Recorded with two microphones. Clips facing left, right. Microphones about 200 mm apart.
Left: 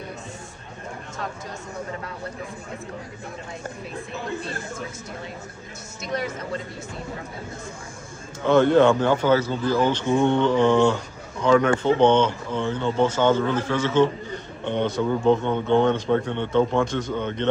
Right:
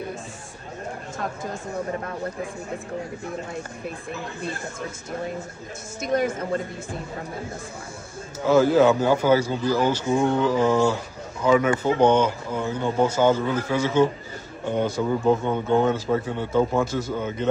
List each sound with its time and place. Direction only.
6.0 s speech: 50° right (ahead or behind)
8.5 s a man's voice: 5° right (ahead or behind)